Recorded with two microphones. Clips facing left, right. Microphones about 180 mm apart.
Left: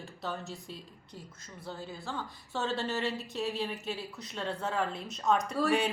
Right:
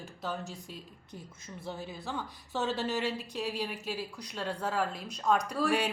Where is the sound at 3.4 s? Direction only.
10° right (ahead or behind).